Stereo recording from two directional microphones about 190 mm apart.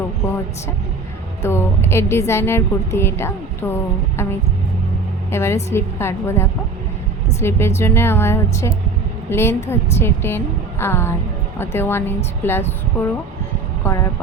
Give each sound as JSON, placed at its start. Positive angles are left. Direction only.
{"t": 1.4, "sound": "a woman's voice", "side_deg": 15}
{"t": 5.3, "sound": "a woman's voice", "side_deg": 15}